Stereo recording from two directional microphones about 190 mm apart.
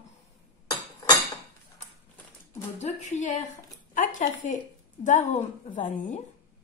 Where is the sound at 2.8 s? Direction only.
35° left (ahead or behind).